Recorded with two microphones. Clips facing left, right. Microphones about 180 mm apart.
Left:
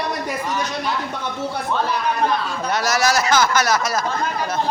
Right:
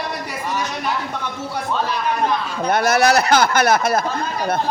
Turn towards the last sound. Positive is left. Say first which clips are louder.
# right 3 dB
turn(degrees=-55)  # may be behind; listen again after turning